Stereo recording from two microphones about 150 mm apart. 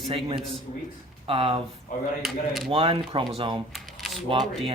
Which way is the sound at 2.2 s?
Centre (ahead or behind).